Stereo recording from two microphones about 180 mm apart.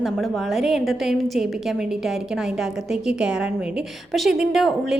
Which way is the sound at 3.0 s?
5° right (ahead or behind).